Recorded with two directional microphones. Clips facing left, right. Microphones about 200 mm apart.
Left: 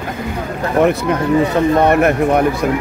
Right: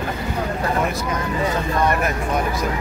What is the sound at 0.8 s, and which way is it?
Speech, 65° left (ahead or behind).